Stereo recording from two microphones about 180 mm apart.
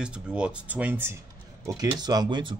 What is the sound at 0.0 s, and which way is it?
Speech, 5° right (ahead or behind).